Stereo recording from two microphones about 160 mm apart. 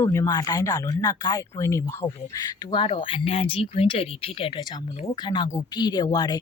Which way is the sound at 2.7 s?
30° left (ahead or behind).